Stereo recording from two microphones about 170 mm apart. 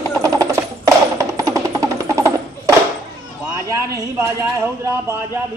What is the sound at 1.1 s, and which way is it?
Music, 20° right (ahead or behind).